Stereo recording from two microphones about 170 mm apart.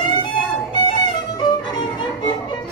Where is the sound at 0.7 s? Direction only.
25° left (ahead or behind).